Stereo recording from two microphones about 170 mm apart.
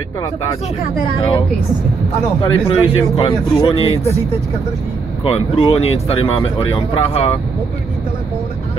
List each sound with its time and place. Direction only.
2.4 s speech: 35° left (ahead or behind)
5.2 s speech: 35° left (ahead or behind)